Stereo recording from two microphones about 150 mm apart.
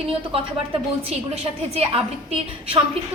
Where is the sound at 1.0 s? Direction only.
40° right (ahead or behind).